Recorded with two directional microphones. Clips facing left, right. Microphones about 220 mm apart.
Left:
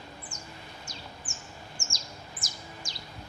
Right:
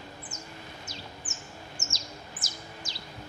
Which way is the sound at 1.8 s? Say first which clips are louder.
Right 2 dB; 5° right (ahead or behind).